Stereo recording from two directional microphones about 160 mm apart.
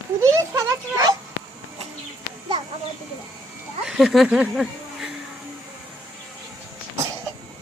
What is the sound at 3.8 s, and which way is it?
Speech, centre (ahead or behind).